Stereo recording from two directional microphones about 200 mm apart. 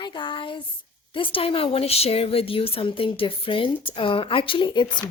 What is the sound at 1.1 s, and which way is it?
A woman's voice, 25° left (ahead or behind).